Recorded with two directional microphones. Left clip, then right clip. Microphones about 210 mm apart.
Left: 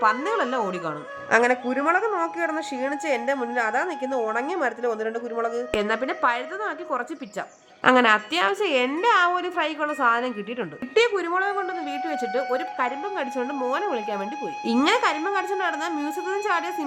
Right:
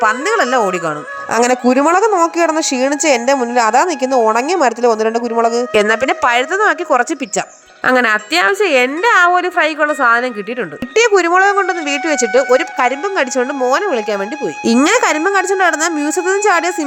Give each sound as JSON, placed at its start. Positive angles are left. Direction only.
{"t": 0.0, "sound": "a woman's voice", "side_deg": -30}
{"t": 2.0, "sound": "a woman's voice", "side_deg": -15}
{"t": 2.3, "sound": "a woman's voice", "side_deg": -30}
{"t": 5.7, "sound": "a woman's voice", "side_deg": -35}
{"t": 10.9, "sound": "a woman's voice", "side_deg": -35}